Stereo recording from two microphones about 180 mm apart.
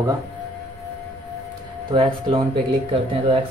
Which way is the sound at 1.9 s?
30° right (ahead or behind).